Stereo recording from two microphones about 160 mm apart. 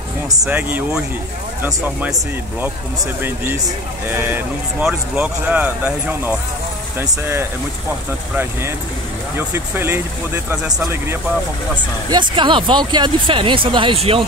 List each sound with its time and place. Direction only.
0.4 s speech: 10° right (ahead or behind)
3.2 s speech: 15° right (ahead or behind)
9.4 s speech: 15° right (ahead or behind)
12.1 s speech: 30° right (ahead or behind)